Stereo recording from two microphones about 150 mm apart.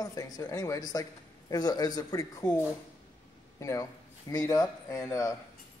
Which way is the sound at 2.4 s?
10° left (ahead or behind).